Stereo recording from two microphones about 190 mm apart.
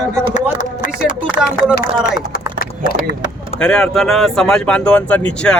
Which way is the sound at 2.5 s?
50° left (ahead or behind).